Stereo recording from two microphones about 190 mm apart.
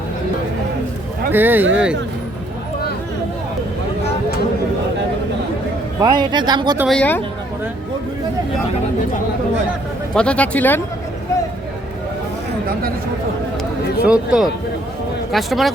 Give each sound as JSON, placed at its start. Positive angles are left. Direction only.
{"t": 1.3, "sound": "speech", "side_deg": -10}
{"t": 6.0, "sound": "speech", "side_deg": -20}
{"t": 6.8, "sound": "speech", "side_deg": 5}
{"t": 10.2, "sound": "speech", "side_deg": 5}
{"t": 14.0, "sound": "speech", "side_deg": -5}